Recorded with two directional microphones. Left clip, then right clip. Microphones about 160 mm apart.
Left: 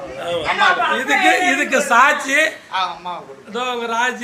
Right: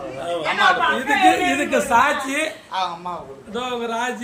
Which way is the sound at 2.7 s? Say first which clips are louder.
Left 3 dB; 70° right (ahead or behind).